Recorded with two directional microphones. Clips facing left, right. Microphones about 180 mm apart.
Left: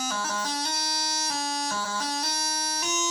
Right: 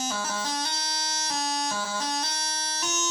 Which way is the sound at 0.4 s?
10° left (ahead or behind).